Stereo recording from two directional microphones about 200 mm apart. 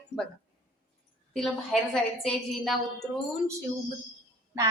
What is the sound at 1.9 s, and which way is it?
Speech, centre (ahead or behind).